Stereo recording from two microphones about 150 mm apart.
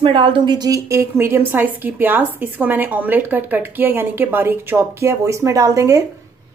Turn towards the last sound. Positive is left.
turn(degrees=-20)  # may be behind; listen again after turning